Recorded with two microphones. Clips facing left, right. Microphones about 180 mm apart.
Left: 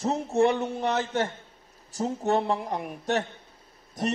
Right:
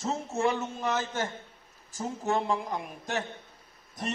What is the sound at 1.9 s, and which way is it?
Speech, 35° left (ahead or behind).